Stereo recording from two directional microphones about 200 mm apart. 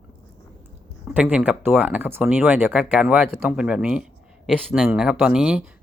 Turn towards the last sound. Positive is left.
turn(degrees=-5)  # may be behind; listen again after turning